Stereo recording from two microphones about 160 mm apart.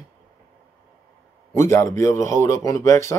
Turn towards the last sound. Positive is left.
turn(degrees=20)  # may be behind; listen again after turning